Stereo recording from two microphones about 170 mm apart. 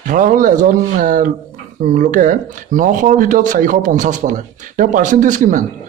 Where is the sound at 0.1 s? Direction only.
50° right (ahead or behind).